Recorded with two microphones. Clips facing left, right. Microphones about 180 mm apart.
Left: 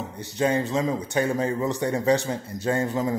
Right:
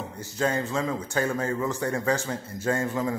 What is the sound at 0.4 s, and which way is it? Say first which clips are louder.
A man's voice: left 3 dB; 20° left (ahead or behind).